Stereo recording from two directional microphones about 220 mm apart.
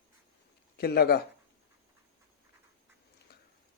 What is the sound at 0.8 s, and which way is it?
Speech, 45° left (ahead or behind).